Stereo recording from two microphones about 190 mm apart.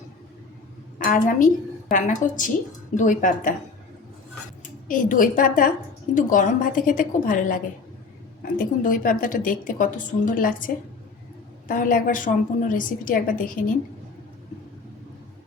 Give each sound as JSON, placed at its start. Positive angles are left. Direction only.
{"t": 0.9, "sound": "a woman's voice", "side_deg": 45}
{"t": 4.9, "sound": "a woman's voice", "side_deg": 45}
{"t": 11.7, "sound": "a woman's voice", "side_deg": 45}